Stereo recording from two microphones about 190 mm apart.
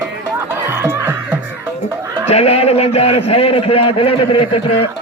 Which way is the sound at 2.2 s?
30° left (ahead or behind).